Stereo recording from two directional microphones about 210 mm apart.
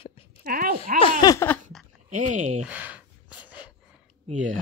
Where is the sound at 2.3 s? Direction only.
35° right (ahead or behind).